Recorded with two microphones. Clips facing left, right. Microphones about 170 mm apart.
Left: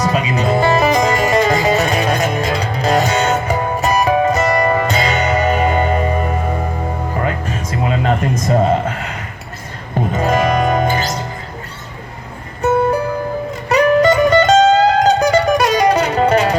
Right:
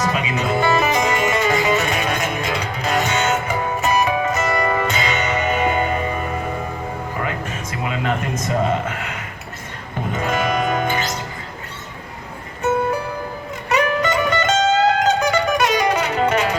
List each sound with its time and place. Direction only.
0.0 s music: 35° left (ahead or behind)
13.7 s music: 35° left (ahead or behind)